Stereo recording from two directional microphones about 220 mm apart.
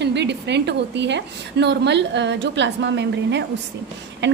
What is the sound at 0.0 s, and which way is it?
A woman's voice, 50° right (ahead or behind).